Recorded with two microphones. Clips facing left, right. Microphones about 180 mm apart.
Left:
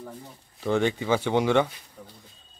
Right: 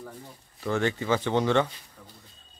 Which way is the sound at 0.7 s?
15° left (ahead or behind).